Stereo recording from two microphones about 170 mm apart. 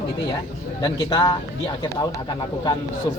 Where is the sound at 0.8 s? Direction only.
25° left (ahead or behind).